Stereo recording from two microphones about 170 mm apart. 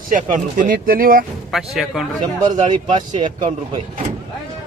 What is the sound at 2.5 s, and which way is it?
Speech, 25° right (ahead or behind).